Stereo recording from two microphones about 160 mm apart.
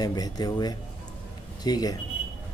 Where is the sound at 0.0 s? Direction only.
25° left (ahead or behind).